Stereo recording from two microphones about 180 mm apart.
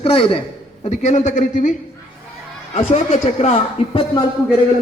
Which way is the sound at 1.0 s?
40° left (ahead or behind).